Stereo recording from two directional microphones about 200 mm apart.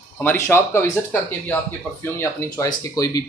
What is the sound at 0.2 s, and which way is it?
Speech, 10° left (ahead or behind).